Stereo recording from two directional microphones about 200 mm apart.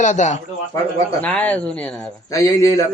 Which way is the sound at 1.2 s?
10° left (ahead or behind).